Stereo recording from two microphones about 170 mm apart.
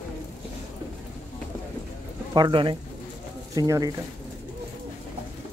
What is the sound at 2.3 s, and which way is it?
Speech, 25° right (ahead or behind).